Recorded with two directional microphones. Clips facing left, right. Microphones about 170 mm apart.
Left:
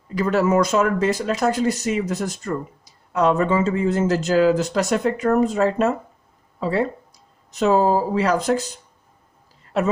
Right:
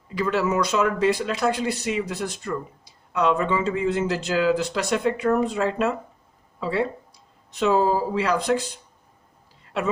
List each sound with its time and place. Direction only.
0.1 s speech: 45° left (ahead or behind)